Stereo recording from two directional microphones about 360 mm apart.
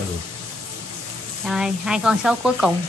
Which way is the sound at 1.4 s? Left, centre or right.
Centre.